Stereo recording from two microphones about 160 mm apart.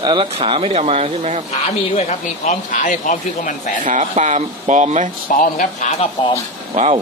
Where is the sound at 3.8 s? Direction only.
50° right (ahead or behind).